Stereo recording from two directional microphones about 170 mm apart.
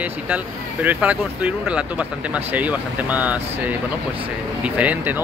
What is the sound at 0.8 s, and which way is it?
Speech, 10° right (ahead or behind).